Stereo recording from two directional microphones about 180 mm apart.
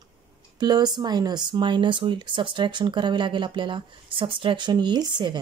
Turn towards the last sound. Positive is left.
turn(degrees=-25)  # may be behind; listen again after turning